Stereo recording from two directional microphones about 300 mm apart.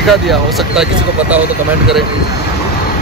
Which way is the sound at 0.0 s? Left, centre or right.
Centre.